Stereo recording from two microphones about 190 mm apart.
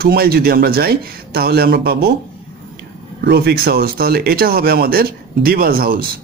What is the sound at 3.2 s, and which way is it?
Speech, 60° right (ahead or behind).